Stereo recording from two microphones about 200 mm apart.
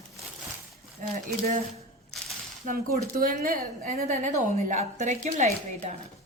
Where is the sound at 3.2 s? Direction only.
45° right (ahead or behind).